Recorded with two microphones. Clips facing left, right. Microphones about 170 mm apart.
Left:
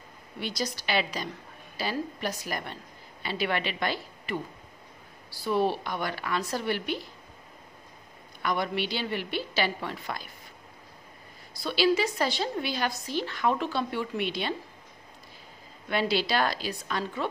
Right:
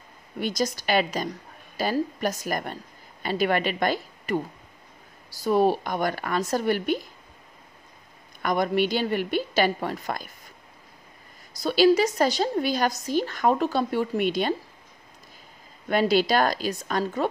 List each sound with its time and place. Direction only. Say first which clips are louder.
0.4 s a woman's voice: right 6 dB; 45° right (ahead or behind)
8.4 s a woman's voice: right 6 dB; 45° right (ahead or behind)
11.5 s a woman's voice: right 6 dB; 45° right (ahead or behind)
15.9 s a woman's voice: right 6 dB; 45° right (ahead or behind)